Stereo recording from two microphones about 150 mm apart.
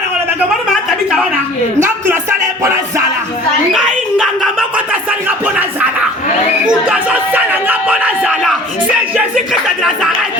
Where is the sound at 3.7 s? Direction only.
Centre (ahead or behind).